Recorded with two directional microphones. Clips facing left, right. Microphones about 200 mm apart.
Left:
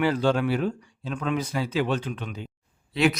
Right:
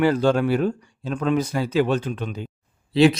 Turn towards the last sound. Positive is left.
turn(degrees=-30)  # may be behind; listen again after turning